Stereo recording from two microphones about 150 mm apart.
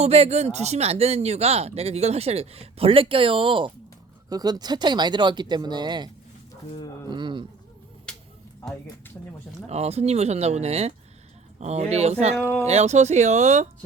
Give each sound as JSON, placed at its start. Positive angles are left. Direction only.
{"t": 0.0, "sound": "speech", "side_deg": -45}
{"t": 7.1, "sound": "a man's voice", "side_deg": -30}
{"t": 8.1, "sound": "a sound", "side_deg": 5}
{"t": 9.6, "sound": "speech", "side_deg": -45}
{"t": 12.4, "sound": "speech", "side_deg": 10}
{"t": 12.6, "sound": "speech", "side_deg": -45}